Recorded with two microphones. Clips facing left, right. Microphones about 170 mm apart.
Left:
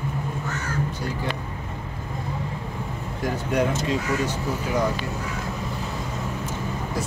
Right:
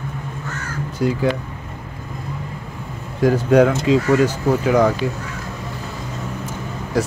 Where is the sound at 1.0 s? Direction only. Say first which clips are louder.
Right 11 dB; 90° right.